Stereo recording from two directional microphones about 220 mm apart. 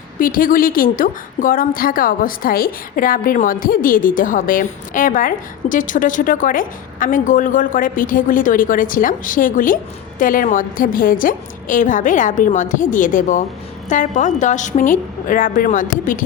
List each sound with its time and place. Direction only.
0.2 s a woman's voice: 40° left (ahead or behind)